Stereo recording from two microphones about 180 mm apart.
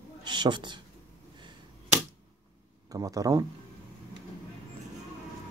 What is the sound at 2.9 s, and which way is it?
Speech, 20° right (ahead or behind).